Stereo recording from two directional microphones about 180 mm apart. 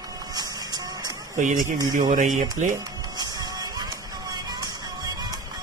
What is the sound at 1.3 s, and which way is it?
Speech, 45° right (ahead or behind).